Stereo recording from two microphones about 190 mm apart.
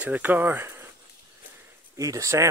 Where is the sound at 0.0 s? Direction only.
10° right (ahead or behind).